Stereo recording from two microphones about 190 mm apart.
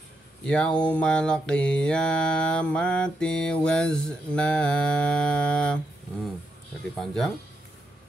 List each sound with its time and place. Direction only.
0.5 s mantra: 5° left (ahead or behind)
7.0 s mantra: centre (ahead or behind)